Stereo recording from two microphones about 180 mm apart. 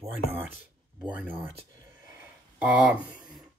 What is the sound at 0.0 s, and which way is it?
Speech, 10° right (ahead or behind).